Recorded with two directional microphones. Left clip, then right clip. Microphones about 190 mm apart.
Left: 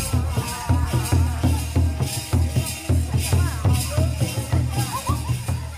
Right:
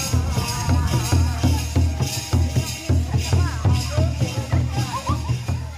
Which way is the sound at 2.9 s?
25° left (ahead or behind).